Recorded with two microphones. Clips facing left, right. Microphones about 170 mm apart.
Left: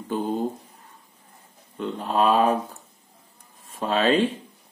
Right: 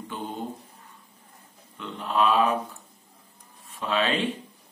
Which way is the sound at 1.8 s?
40° left (ahead or behind).